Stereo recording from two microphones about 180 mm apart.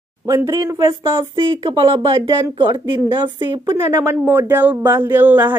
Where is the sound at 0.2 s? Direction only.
15° right (ahead or behind).